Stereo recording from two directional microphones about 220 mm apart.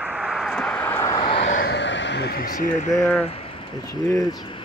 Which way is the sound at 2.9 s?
10° left (ahead or behind).